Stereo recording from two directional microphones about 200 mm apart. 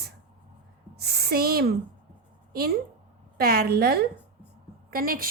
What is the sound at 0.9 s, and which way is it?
A woman's voice, 50° right (ahead or behind).